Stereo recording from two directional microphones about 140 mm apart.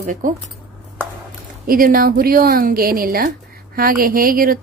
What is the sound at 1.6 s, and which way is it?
A woman's voice, 90° right.